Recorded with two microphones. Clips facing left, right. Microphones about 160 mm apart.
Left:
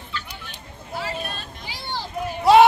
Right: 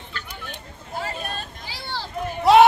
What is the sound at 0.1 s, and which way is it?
Hubbub, 50° right (ahead or behind).